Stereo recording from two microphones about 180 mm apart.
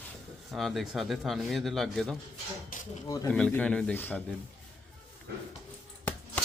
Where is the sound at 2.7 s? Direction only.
50° left (ahead or behind).